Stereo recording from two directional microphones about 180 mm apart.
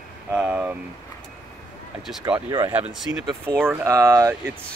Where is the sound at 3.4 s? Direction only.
10° right (ahead or behind).